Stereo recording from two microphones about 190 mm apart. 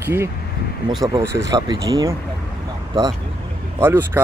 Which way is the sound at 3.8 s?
10° right (ahead or behind).